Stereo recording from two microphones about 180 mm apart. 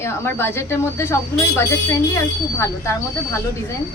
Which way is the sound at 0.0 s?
15° left (ahead or behind).